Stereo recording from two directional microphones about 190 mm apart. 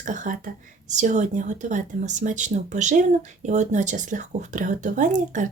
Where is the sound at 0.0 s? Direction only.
40° right (ahead or behind).